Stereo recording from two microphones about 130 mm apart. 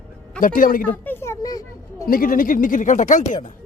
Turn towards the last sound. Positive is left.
turn(degrees=75)  # may be behind; listen again after turning